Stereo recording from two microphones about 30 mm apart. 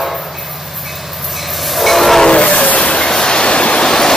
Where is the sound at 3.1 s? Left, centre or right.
Left.